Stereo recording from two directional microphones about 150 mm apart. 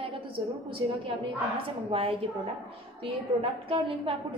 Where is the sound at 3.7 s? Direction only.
35° right (ahead or behind).